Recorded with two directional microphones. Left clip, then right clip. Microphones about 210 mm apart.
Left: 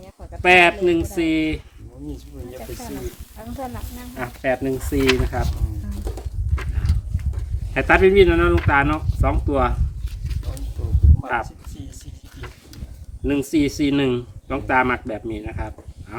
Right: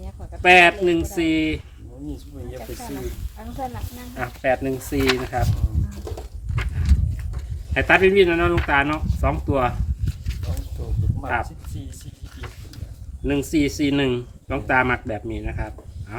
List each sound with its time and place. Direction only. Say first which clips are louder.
0.4 s speech: even; 5° left (ahead or behind)
3.3 s speech: right 1 dB; 45° left (ahead or behind)
4.1 s speech: right 1 dB; 5° left (ahead or behind)
6.6 s horse: right 2 dB; 5° left (ahead or behind)
7.7 s speech: left 1 dB; 5° left (ahead or behind)
13.2 s speech: left 1 dB; 5° left (ahead or behind)